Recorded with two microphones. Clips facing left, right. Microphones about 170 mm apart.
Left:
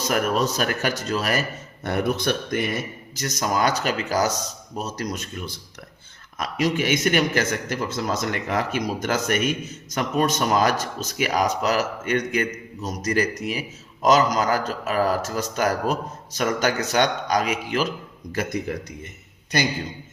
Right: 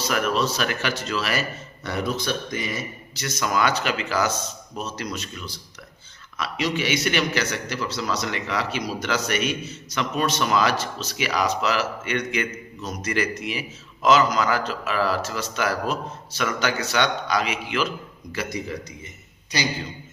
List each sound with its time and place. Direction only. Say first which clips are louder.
0.0 s a man's voice: left 1 dB; 45° left (ahead or behind)